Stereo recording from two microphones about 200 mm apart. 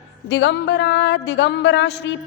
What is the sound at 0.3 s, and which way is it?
A woman's voice, 65° left (ahead or behind).